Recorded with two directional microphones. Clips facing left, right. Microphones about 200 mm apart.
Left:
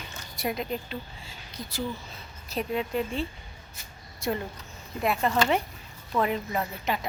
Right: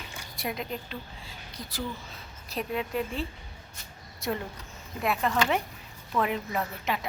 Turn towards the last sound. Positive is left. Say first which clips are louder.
# left 1 dB
turn(degrees=0)  # may be behind; listen again after turning